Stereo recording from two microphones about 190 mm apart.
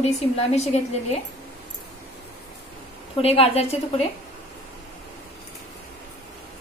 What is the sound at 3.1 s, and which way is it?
Speech, 30° left (ahead or behind).